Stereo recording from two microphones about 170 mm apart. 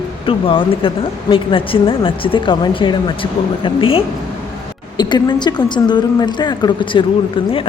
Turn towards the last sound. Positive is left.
turn(degrees=30)  # may be behind; listen again after turning